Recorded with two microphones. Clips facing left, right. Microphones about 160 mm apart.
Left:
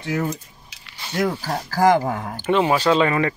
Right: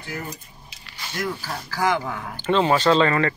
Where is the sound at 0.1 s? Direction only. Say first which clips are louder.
Left 9 dB; 90° left.